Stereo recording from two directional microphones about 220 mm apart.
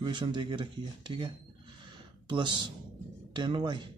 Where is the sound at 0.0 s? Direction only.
20° right (ahead or behind).